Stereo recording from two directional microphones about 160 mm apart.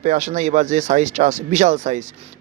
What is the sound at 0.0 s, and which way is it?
Speech, 45° right (ahead or behind).